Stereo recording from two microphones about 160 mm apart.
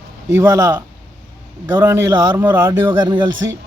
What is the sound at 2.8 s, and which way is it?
Speech, 30° right (ahead or behind).